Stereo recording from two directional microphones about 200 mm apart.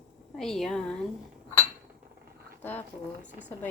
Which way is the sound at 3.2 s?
10° right (ahead or behind).